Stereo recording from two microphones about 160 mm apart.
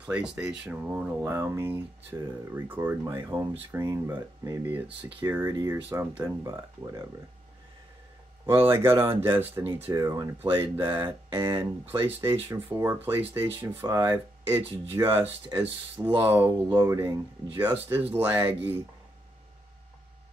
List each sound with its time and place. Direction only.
0.0 s speech: 10° right (ahead or behind)
8.5 s speech: 15° right (ahead or behind)